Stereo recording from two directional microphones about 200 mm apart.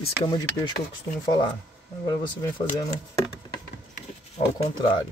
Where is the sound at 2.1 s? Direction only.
20° left (ahead or behind).